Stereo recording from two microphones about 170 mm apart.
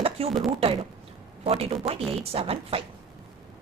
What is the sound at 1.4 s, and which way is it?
A woman's voice, 35° right (ahead or behind).